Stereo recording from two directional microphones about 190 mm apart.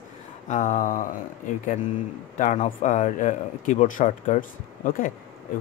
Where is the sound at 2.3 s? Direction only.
40° left (ahead or behind).